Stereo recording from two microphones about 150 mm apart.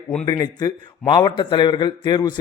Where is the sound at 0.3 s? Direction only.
25° left (ahead or behind).